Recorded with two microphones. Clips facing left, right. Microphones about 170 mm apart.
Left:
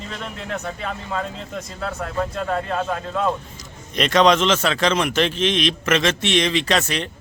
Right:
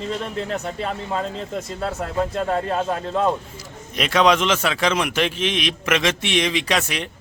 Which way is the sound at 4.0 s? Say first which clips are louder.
Left 2 dB; 5° right (ahead or behind).